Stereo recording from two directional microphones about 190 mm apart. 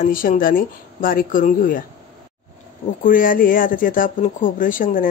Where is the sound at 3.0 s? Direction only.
45° left (ahead or behind).